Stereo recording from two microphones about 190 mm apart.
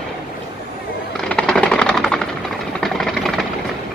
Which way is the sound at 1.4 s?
5° left (ahead or behind).